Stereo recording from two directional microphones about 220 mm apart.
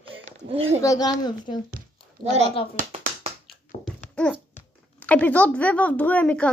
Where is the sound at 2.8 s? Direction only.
35° right (ahead or behind).